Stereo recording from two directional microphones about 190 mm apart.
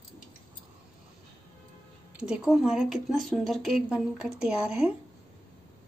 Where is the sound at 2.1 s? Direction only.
5° right (ahead or behind).